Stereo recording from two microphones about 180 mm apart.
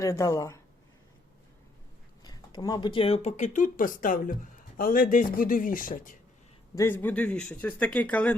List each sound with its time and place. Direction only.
0.0 s speech: 15° left (ahead or behind)
2.2 s speech: 20° left (ahead or behind); by 6.1 s 50° left (ahead or behind)
6.7 s speech: 10° left (ahead or behind)